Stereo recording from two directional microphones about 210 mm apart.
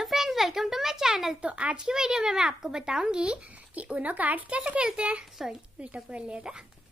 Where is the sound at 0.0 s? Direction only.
Centre (ahead or behind).